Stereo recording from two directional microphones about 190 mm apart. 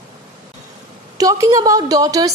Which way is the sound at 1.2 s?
15° right (ahead or behind).